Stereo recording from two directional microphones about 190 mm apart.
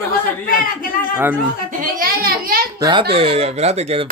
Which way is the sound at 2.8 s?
20° right (ahead or behind).